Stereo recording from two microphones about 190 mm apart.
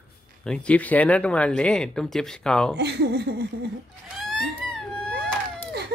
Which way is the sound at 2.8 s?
60° right (ahead or behind).